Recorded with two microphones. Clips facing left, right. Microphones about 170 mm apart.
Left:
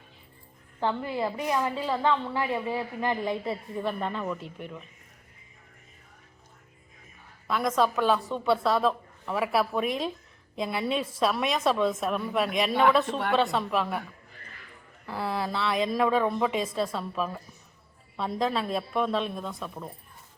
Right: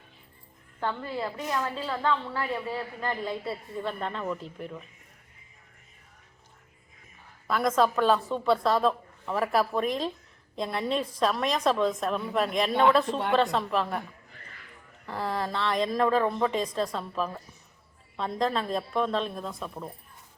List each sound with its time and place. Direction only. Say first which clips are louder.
0.8 s a woman's voice: left 3 dB; 15° left (ahead or behind)
4.0 s a woman's voice: left 1 dB; centre (ahead or behind)
7.4 s a woman's voice: right 1 dB; centre (ahead or behind)
15.0 s a woman's voice: even; 5° left (ahead or behind)